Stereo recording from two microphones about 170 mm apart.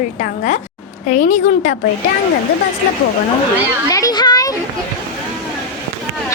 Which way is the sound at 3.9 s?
20° left (ahead or behind).